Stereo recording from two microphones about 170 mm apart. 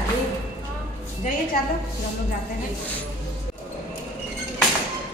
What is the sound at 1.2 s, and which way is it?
Speech, 50° left (ahead or behind).